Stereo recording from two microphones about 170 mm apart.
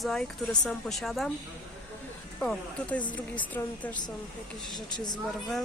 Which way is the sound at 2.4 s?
5° left (ahead or behind).